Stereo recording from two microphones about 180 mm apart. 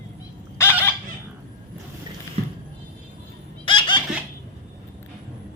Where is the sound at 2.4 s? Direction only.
35° right (ahead or behind).